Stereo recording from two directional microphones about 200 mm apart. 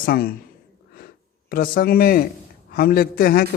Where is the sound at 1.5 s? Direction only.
50° left (ahead or behind).